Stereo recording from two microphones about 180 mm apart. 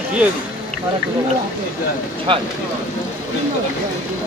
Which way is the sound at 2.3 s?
30° right (ahead or behind).